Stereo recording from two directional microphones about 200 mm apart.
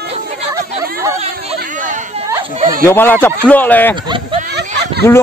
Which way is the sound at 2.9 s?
10° left (ahead or behind).